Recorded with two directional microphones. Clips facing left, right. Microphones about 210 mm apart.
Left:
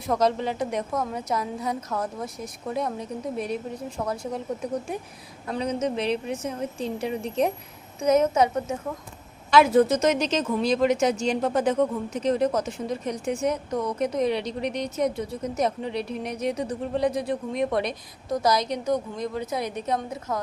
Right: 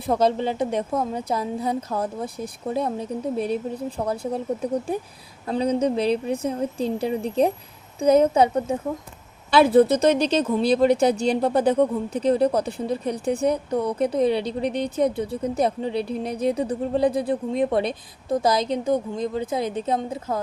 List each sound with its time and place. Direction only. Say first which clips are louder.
0.0 s a woman's voice: right 3 dB; 30° right (ahead or behind)